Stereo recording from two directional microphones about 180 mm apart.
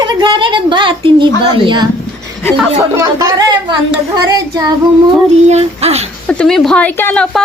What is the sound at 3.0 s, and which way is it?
Speech, 15° right (ahead or behind).